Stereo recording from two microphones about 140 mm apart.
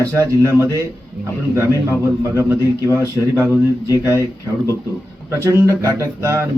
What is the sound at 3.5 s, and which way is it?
Speech, 25° left (ahead or behind).